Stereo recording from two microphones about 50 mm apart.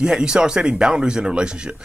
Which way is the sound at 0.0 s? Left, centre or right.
Centre.